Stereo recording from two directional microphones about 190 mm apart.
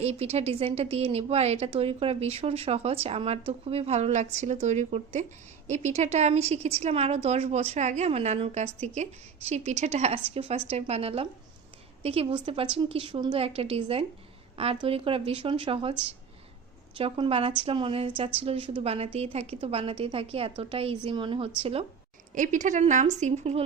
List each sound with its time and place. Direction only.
0.0 s a woman's voice: 35° right (ahead or behind)
22.4 s a woman's voice: 40° right (ahead or behind)